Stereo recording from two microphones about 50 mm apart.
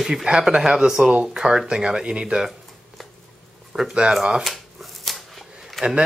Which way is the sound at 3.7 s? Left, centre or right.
Centre.